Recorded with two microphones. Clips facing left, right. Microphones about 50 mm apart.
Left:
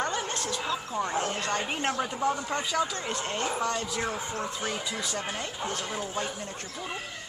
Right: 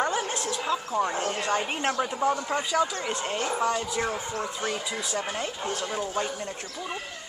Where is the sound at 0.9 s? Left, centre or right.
Centre.